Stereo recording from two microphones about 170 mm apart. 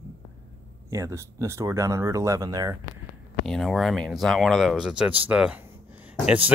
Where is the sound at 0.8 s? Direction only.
20° right (ahead or behind).